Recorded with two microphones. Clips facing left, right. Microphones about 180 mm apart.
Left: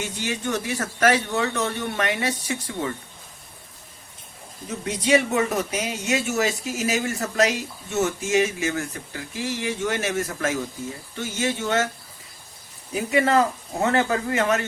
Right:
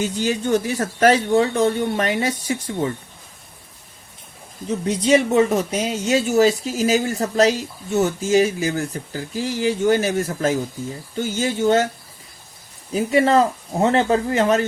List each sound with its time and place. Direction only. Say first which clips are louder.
0.2 s speech: right 7 dB; 35° right (ahead or behind)
4.9 s speech: right 4 dB; 30° right (ahead or behind)
12.9 s speech: right 4 dB; 35° right (ahead or behind)